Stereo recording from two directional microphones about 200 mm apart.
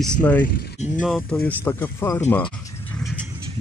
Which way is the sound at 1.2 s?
10° left (ahead or behind).